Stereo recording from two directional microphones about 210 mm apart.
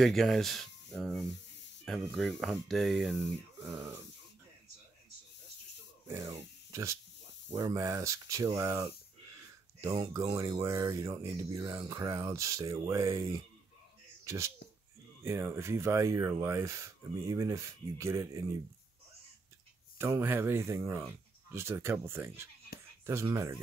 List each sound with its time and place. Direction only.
0.0 s speech: centre (ahead or behind)
6.0 s speech: 15° right (ahead or behind)
20.0 s speech: 10° right (ahead or behind)